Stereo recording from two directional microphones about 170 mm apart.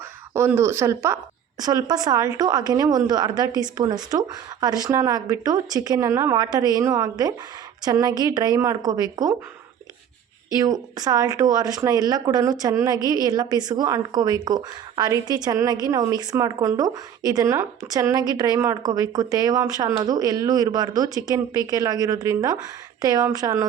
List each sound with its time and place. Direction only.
0.3 s speech: 15° right (ahead or behind)
10.6 s speech: 20° right (ahead or behind)